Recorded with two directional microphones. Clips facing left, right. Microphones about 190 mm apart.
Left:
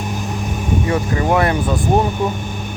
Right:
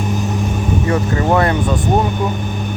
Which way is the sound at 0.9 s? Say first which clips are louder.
Right 2 dB; 20° left (ahead or behind).